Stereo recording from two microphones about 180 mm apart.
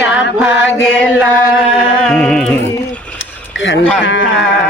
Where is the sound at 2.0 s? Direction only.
5° left (ahead or behind).